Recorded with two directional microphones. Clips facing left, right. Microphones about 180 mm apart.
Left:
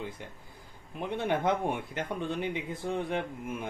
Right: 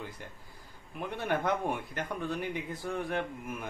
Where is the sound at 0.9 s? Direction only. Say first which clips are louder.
Left 2 dB; 25° left (ahead or behind).